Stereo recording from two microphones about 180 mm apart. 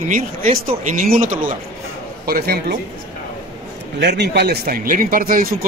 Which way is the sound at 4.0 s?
70° right (ahead or behind).